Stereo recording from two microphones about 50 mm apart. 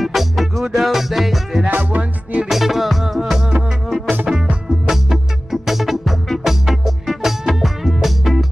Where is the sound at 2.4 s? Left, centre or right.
Centre.